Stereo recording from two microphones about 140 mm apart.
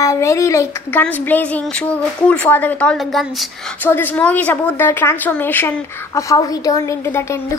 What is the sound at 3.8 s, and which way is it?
A woman's voice, 15° left (ahead or behind).